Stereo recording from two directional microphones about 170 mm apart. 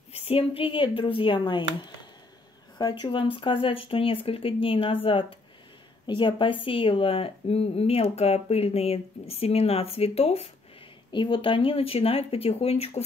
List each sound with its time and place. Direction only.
0.1 s a woman's voice: 35° left (ahead or behind)
2.8 s a woman's voice: 25° left (ahead or behind)
6.0 s a woman's voice: 30° left (ahead or behind)